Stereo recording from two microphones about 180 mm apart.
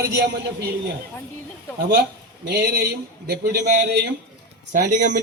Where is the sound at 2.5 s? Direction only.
65° right (ahead or behind).